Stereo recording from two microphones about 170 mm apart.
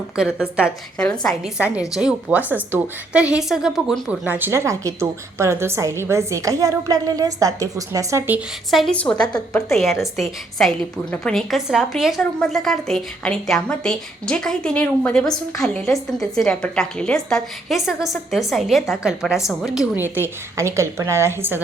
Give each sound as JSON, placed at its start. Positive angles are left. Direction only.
{"t": 0.2, "sound": "a woman's voice", "side_deg": -5}
{"t": 0.9, "sound": "a woman's voice", "side_deg": 5}
{"t": 1.5, "sound": "a woman's voice", "side_deg": -10}
{"t": 8.7, "sound": "a woman's voice", "side_deg": 5}